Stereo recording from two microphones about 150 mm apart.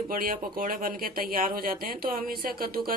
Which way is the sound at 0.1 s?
70° right (ahead or behind).